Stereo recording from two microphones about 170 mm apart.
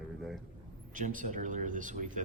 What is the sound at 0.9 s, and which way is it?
Speech, 50° right (ahead or behind).